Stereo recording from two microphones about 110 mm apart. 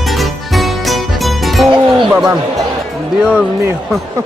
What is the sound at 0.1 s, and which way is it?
Music, centre (ahead or behind).